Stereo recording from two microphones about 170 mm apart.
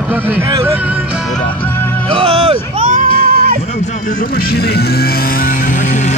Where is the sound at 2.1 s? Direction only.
35° right (ahead or behind).